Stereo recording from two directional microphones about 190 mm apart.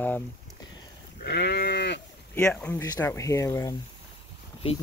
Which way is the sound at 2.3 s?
10° left (ahead or behind).